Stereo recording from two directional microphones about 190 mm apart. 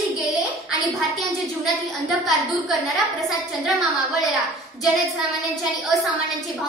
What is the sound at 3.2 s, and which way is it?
A woman's voice, centre (ahead or behind).